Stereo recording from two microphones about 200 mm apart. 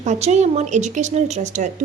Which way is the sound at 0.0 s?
35° right (ahead or behind).